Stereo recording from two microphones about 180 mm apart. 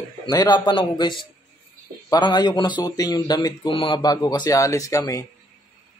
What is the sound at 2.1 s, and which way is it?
Speech, 25° left (ahead or behind).